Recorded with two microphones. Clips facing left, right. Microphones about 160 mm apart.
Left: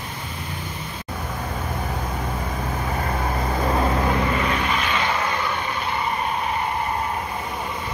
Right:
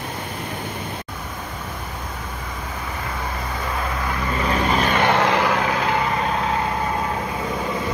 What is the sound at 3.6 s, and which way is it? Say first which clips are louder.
Vehicle: left 6 dB; 35° left (ahead or behind).